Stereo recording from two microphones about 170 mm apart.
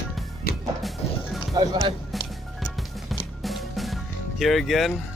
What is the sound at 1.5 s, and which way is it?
Speech, 20° right (ahead or behind).